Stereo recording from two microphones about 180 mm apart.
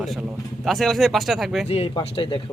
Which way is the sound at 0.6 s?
Centre (ahead or behind).